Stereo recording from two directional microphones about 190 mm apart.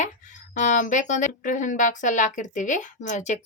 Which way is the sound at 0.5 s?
40° left (ahead or behind).